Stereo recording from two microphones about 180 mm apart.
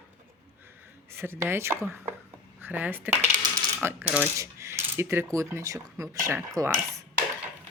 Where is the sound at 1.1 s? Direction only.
15° right (ahead or behind).